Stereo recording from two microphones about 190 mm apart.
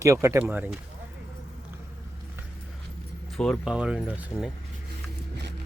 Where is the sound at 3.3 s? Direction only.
Centre (ahead or behind).